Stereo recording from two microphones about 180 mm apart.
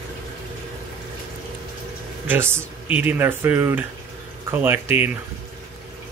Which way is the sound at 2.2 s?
10° right (ahead or behind).